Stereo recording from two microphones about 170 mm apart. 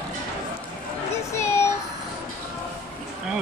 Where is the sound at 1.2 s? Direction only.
15° left (ahead or behind).